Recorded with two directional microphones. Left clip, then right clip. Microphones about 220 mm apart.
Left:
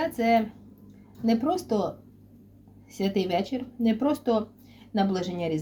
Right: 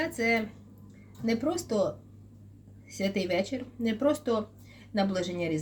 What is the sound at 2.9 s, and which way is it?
Speech, 5° left (ahead or behind).